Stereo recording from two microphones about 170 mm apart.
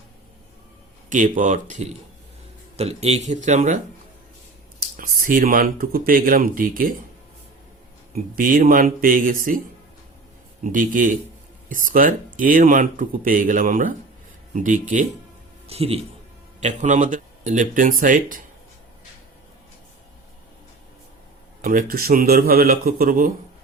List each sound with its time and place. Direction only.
1.1 s speech: 50° right (ahead or behind)
4.9 s speech: 55° right (ahead or behind)
8.4 s speech: 55° right (ahead or behind)
10.6 s speech: 50° right (ahead or behind)
15.6 s a man's voice: 35° right (ahead or behind); by 18.4 s 50° right (ahead or behind)
21.6 s speech: 55° right (ahead or behind)